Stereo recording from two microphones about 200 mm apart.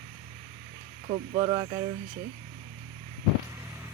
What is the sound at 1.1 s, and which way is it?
Speech, 25° right (ahead or behind).